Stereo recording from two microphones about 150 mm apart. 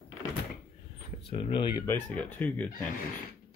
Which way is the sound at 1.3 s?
35° left (ahead or behind).